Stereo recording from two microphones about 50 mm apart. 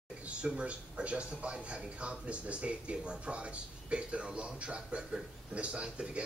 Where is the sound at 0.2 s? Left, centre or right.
Right.